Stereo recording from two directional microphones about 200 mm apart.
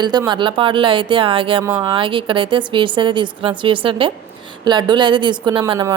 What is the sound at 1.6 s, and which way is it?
Speech, 15° right (ahead or behind).